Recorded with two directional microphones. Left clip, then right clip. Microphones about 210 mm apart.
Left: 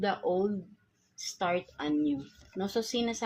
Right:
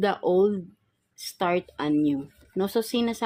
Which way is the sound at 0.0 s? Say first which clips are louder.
Right 7 dB; 50° right (ahead or behind).